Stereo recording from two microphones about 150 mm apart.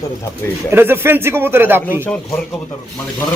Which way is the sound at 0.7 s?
15° right (ahead or behind).